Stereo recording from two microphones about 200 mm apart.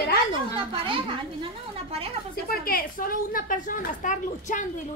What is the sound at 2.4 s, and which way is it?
A woman's voice, 45° left (ahead or behind).